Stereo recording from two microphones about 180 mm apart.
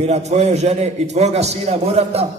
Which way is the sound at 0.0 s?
40° right (ahead or behind).